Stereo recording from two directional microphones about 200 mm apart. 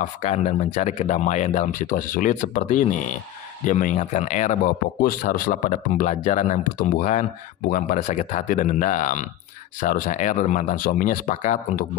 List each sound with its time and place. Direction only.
0.0 s speech: 35° left (ahead or behind)